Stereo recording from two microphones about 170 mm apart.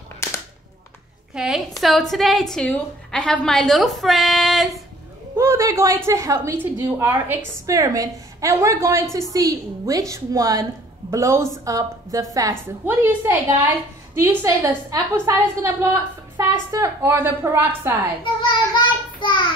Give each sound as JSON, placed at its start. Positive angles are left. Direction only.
{"t": 1.3, "sound": "a woman's voice", "side_deg": -5}
{"t": 5.4, "sound": "a woman's voice", "side_deg": -15}
{"t": 18.2, "sound": "child singing", "side_deg": 30}